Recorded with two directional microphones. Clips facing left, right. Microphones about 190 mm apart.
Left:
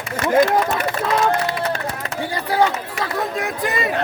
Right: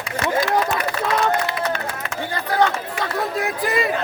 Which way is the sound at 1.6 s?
30° left (ahead or behind).